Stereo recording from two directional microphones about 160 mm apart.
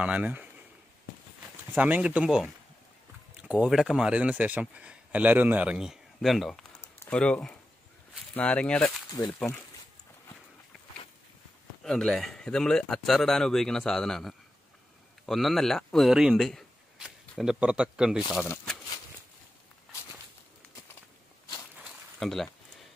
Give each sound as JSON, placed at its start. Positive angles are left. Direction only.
{"t": 0.0, "sound": "speech", "side_deg": -10}
{"t": 1.7, "sound": "speech", "side_deg": -10}
{"t": 6.8, "sound": "a sound", "side_deg": 15}
{"t": 7.2, "sound": "speech", "side_deg": 5}
{"t": 11.8, "sound": "speech", "side_deg": 0}
{"t": 21.8, "sound": "a sound", "side_deg": 0}